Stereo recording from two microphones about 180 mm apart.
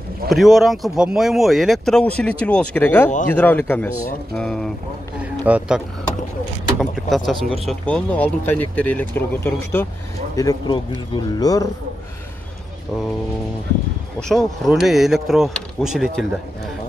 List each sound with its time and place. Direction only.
0.3 s speech: centre (ahead or behind)
5.2 s a sound: 5° right (ahead or behind)
6.8 s speech: centre (ahead or behind); by 11.7 s 20° left (ahead or behind)
14.3 s speech: centre (ahead or behind)